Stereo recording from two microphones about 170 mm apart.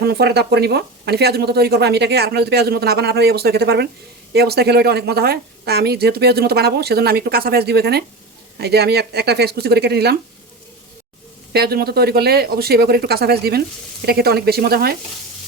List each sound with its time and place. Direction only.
0.0 s speech: 70° right (ahead or behind)
11.5 s speech: 65° right (ahead or behind)